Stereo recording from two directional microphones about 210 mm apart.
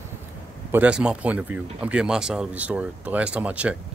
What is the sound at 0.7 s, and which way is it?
Speech, 5° right (ahead or behind).